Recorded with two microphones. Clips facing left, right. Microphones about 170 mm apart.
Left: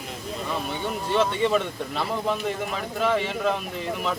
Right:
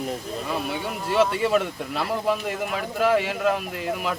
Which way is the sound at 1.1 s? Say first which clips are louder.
Right 2 dB; 5° right (ahead or behind).